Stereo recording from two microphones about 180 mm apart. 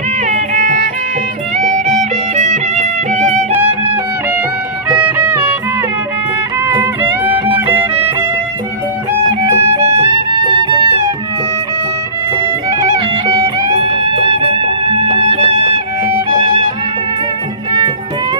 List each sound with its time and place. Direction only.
0.3 s music: 45° right (ahead or behind)
2.0 s music: 40° right (ahead or behind)
4.9 s music: 10° right (ahead or behind)
6.8 s music: 10° right (ahead or behind)
9.8 s music: 35° right (ahead or behind)
13.7 s music: 30° right (ahead or behind)